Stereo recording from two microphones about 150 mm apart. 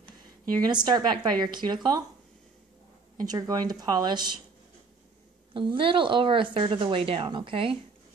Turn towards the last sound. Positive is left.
turn(degrees=-35)  # may be behind; listen again after turning